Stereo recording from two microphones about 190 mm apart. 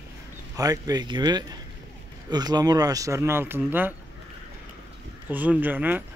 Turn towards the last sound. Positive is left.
turn(degrees=-10)  # may be behind; listen again after turning